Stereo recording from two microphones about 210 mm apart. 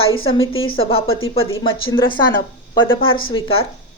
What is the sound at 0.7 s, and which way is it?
A woman's voice, 25° left (ahead or behind).